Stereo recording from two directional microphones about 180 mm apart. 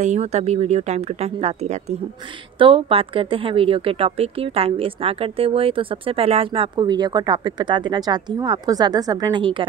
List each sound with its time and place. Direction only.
0.0 s speech: 40° right (ahead or behind)